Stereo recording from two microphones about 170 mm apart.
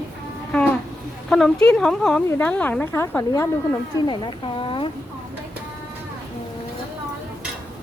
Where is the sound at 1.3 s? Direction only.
Centre (ahead or behind).